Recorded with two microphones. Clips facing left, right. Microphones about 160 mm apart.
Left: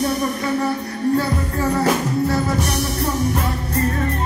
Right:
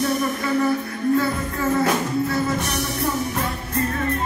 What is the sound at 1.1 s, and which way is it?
Music, 35° left (ahead or behind).